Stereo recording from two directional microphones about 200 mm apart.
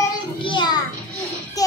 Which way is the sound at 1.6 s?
20° left (ahead or behind).